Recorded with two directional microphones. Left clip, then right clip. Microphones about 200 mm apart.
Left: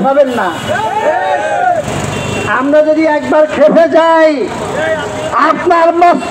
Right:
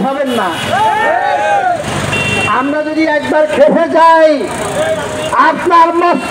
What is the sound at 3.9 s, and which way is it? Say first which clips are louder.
Speech: right 1 dB; 40° right (ahead or behind).